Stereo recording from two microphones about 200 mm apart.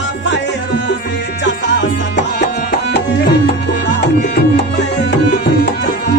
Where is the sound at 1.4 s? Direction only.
60° left (ahead or behind).